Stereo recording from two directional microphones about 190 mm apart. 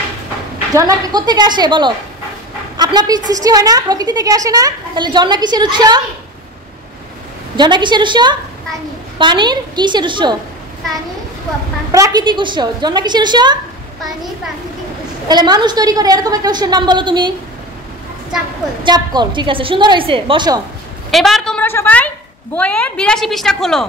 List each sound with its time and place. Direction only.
0.7 s a woman's voice: 20° right (ahead or behind)
7.5 s a woman's voice: 25° right (ahead or behind)
11.9 s a woman's voice: 20° right (ahead or behind)
15.2 s a woman's voice: 20° right (ahead or behind)
18.9 s a woman's voice: 25° right (ahead or behind)
21.1 s a woman's voice: centre (ahead or behind)